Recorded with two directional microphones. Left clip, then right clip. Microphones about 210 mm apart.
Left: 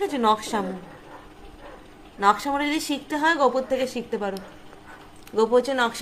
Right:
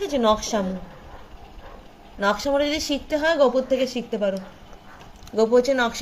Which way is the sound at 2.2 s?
5° left (ahead or behind).